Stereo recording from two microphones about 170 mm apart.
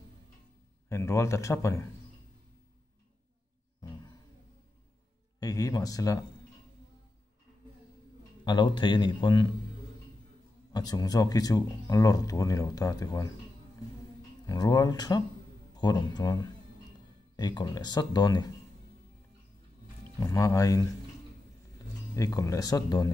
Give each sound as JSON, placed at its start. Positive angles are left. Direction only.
{"t": 0.8, "sound": "speech", "side_deg": 15}
{"t": 3.8, "sound": "a sound", "side_deg": 20}
{"t": 5.4, "sound": "speech", "side_deg": 20}
{"t": 8.5, "sound": "speech", "side_deg": 25}
{"t": 10.7, "sound": "speech", "side_deg": 25}
{"t": 14.4, "sound": "speech", "side_deg": 20}
{"t": 20.2, "sound": "speech", "side_deg": 20}
{"t": 22.1, "sound": "speech", "side_deg": 20}